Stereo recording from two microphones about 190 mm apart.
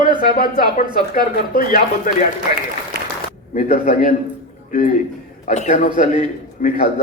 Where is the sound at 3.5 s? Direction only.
40° left (ahead or behind).